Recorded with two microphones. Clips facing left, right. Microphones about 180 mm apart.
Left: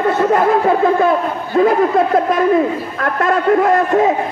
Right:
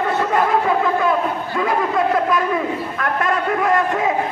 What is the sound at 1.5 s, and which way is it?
A man's voice, 40° left (ahead or behind).